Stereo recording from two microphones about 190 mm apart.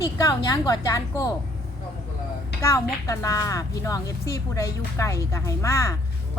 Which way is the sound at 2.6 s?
15° left (ahead or behind).